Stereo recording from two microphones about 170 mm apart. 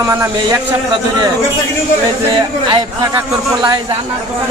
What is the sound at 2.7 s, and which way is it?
Speech, 20° right (ahead or behind).